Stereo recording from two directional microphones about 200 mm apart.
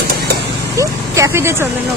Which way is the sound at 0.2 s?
55° right (ahead or behind).